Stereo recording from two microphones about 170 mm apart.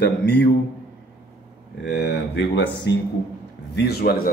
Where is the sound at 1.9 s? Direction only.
80° left.